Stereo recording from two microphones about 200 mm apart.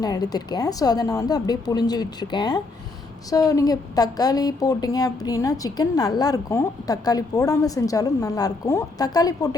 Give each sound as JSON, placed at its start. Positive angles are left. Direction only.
{"t": 0.0, "sound": "a woman's voice", "side_deg": 20}